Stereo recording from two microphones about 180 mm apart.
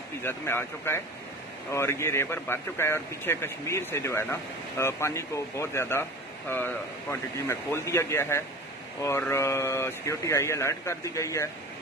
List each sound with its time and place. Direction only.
0.2 s speech: 10° left (ahead or behind)